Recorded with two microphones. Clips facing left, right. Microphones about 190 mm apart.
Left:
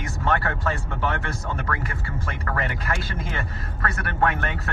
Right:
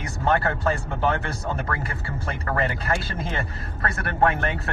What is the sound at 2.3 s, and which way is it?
A man's voice, 35° right (ahead or behind).